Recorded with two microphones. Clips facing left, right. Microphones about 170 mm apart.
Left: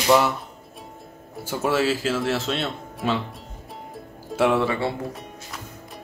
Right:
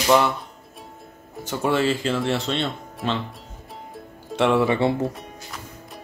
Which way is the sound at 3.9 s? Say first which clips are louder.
Even; 5° left (ahead or behind).